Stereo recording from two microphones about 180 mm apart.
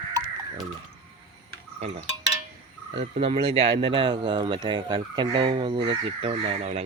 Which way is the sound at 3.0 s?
35° right (ahead or behind).